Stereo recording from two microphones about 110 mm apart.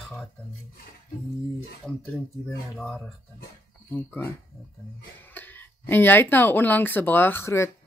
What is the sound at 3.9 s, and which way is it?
Speech, 15° left (ahead or behind).